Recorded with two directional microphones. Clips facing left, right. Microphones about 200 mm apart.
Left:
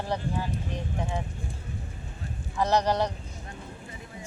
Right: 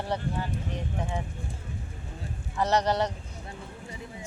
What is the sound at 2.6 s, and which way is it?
Speech, 10° left (ahead or behind).